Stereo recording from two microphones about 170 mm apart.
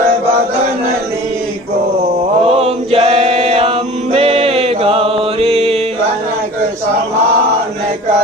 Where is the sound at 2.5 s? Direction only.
35° right (ahead or behind).